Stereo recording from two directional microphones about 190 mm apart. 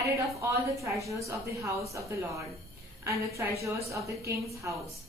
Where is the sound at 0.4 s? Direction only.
15° right (ahead or behind).